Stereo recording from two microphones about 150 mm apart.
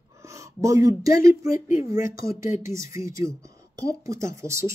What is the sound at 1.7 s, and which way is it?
Speech, 60° left (ahead or behind).